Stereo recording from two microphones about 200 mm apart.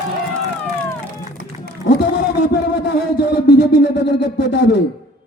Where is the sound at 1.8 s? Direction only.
60° left (ahead or behind).